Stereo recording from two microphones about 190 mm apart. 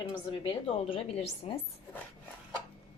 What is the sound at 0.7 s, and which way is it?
Speech, 30° left (ahead or behind).